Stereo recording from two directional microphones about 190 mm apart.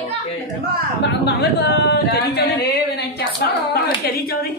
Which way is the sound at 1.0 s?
60° left (ahead or behind).